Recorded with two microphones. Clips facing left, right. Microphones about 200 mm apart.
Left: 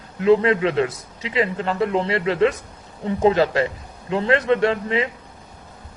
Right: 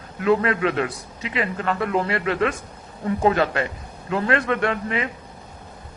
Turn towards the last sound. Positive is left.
turn(degrees=25)  # may be behind; listen again after turning